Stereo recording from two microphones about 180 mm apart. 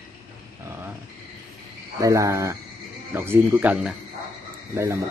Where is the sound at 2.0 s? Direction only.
15° right (ahead or behind).